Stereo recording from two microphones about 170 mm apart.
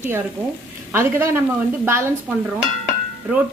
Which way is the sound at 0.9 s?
15° right (ahead or behind).